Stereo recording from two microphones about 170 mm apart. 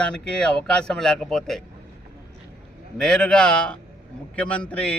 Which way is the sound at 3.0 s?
5° left (ahead or behind).